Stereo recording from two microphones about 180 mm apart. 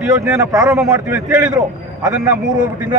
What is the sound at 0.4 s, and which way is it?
A man's voice, 15° right (ahead or behind).